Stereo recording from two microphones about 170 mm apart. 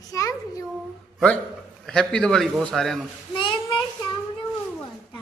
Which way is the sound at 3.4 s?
30° left (ahead or behind).